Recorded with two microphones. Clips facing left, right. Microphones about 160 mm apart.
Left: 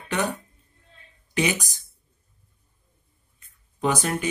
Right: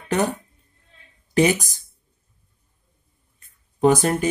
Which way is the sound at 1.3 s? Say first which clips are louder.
Right 7 dB; 45° right (ahead or behind).